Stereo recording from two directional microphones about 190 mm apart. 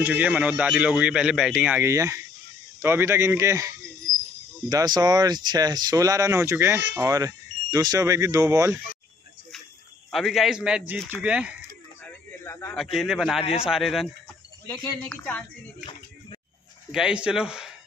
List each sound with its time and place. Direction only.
0.0 s speech: 10° right (ahead or behind)
10.1 s speech: centre (ahead or behind)
12.4 s a man's voice: 15° left (ahead or behind)
12.7 s a woman's voice: centre (ahead or behind)
16.9 s speech: 5° right (ahead or behind)